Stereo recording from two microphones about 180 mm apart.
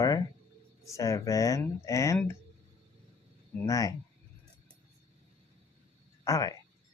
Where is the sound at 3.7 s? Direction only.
20° left (ahead or behind).